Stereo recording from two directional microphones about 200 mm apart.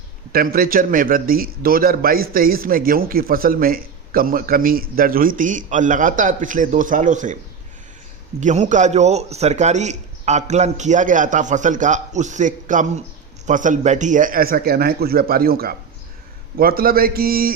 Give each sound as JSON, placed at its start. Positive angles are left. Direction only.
{"t": 0.3, "sound": "a man's voice", "side_deg": -45}
{"t": 8.4, "sound": "a man's voice", "side_deg": -35}